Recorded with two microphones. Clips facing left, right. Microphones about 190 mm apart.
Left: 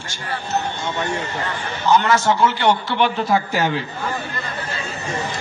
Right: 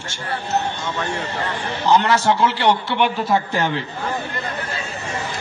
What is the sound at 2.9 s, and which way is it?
Speech, 15° right (ahead or behind).